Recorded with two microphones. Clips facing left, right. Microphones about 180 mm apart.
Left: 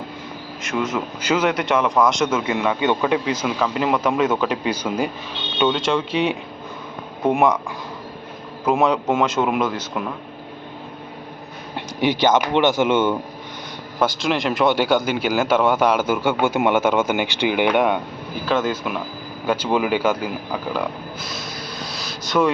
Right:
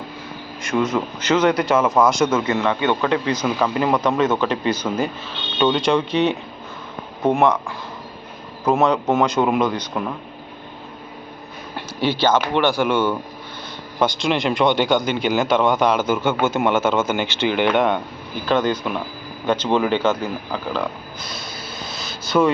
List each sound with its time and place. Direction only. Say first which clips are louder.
0.6 s speech: right 3 dB; centre (ahead or behind)
8.8 s speech: right 1 dB; 10° left (ahead or behind)
11.9 s speech: left 1 dB; 15° left (ahead or behind)
14.0 s a man's voice: right 1 dB; centre (ahead or behind)